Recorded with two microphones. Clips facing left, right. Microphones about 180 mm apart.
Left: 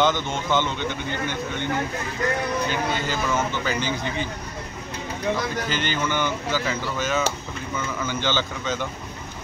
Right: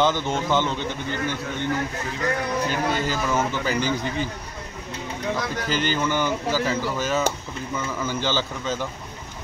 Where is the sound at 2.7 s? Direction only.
40° right (ahead or behind).